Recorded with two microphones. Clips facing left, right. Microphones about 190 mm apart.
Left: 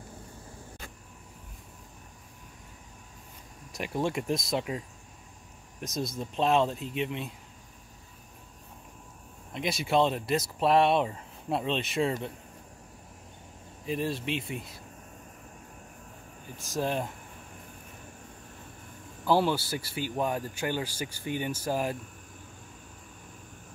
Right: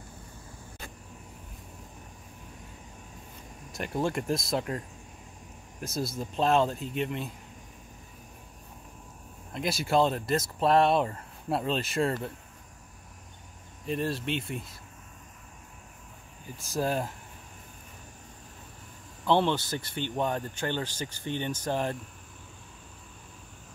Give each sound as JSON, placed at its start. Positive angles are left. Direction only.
{"t": 3.7, "sound": "speech", "side_deg": 0}
{"t": 6.1, "sound": "speech", "side_deg": 0}
{"t": 9.5, "sound": "speech", "side_deg": 0}
{"t": 13.8, "sound": "speech", "side_deg": 0}
{"t": 16.7, "sound": "speech", "side_deg": -5}
{"t": 19.2, "sound": "speech", "side_deg": 5}